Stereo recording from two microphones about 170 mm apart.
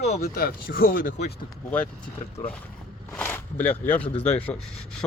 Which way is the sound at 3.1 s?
10° left (ahead or behind).